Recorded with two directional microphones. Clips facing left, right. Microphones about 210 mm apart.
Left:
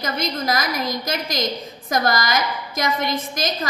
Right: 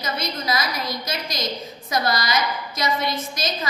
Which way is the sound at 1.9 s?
50° left (ahead or behind).